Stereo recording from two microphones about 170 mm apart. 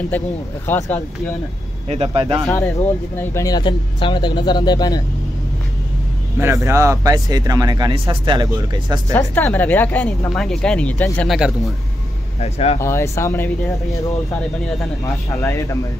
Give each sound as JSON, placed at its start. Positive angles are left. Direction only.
{"t": 0.1, "sound": "speech", "side_deg": 10}
{"t": 1.9, "sound": "speech", "side_deg": -35}
{"t": 2.5, "sound": "speech", "side_deg": 15}
{"t": 6.4, "sound": "speech", "side_deg": -15}
{"t": 9.1, "sound": "speech", "side_deg": 10}
{"t": 11.3, "sound": "speech", "side_deg": 0}
{"t": 12.4, "sound": "speech", "side_deg": 40}
{"t": 12.8, "sound": "speech", "side_deg": 15}
{"t": 15.4, "sound": "speech", "side_deg": 20}